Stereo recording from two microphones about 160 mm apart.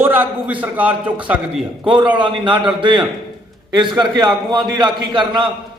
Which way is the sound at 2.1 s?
30° right (ahead or behind).